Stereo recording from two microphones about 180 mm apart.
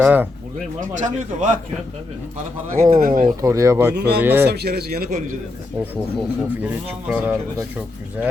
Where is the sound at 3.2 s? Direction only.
20° right (ahead or behind).